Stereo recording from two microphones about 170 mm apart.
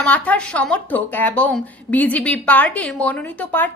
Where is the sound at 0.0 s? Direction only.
10° left (ahead or behind).